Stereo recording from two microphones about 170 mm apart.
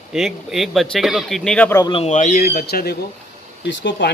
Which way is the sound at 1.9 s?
40° left (ahead or behind).